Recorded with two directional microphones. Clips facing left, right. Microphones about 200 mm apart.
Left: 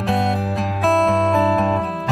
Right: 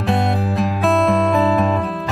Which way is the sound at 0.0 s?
Centre (ahead or behind).